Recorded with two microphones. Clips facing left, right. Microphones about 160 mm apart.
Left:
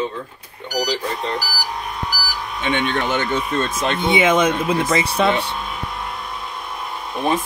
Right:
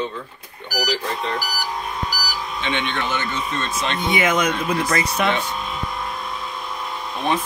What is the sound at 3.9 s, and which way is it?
Speech, 25° left (ahead or behind).